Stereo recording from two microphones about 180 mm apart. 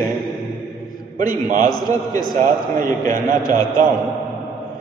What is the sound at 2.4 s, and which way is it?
Speech, 50° right (ahead or behind).